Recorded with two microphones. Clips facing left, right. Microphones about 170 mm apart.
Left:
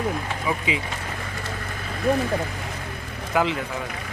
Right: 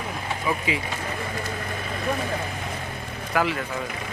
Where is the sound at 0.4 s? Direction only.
20° left (ahead or behind).